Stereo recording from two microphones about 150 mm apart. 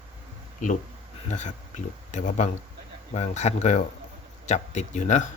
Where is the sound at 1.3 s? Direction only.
50° left (ahead or behind).